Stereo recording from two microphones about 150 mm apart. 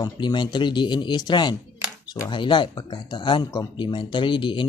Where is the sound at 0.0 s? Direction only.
30° left (ahead or behind).